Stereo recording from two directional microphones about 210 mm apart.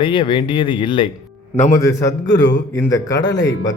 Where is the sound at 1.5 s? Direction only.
35° left (ahead or behind).